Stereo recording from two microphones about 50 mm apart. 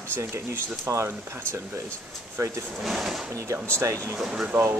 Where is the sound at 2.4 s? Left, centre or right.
Right.